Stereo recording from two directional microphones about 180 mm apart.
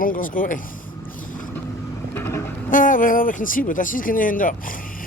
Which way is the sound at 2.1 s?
15° left (ahead or behind).